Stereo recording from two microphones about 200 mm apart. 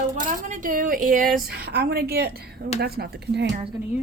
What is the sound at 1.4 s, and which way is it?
A woman's voice, 50° right (ahead or behind).